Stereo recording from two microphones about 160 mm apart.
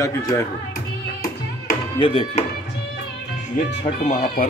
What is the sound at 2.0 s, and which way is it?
Speech, 35° left (ahead or behind).